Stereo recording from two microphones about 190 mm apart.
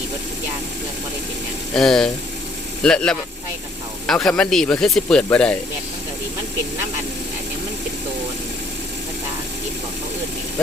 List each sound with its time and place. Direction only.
1.7 s speech: 5° left (ahead or behind)